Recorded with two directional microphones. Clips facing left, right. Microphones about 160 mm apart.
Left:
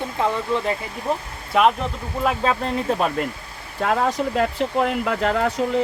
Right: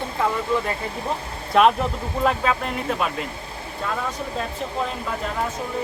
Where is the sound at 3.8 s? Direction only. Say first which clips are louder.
Left 7 dB; 90° left.